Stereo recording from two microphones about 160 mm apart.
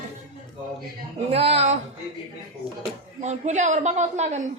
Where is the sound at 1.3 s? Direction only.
40° right (ahead or behind).